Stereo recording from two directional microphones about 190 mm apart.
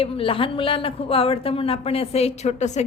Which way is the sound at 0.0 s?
30° left (ahead or behind).